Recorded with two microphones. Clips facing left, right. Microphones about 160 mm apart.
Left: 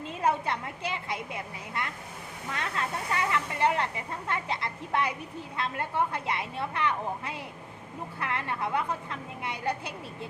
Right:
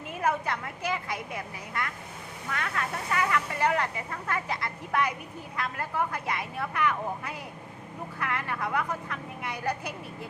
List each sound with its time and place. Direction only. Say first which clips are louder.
0.1 s speech: even; 25° left (ahead or behind)